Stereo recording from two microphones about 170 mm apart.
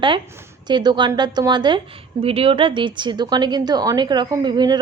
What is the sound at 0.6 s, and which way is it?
A woman's voice, 25° right (ahead or behind).